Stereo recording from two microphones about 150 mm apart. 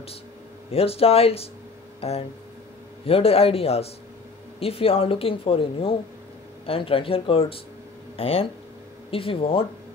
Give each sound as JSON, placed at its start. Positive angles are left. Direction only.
{"t": 0.7, "sound": "speech", "side_deg": 40}